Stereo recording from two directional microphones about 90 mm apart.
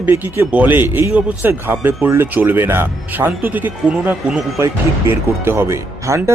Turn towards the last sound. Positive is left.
turn(degrees=-30)  # may be behind; listen again after turning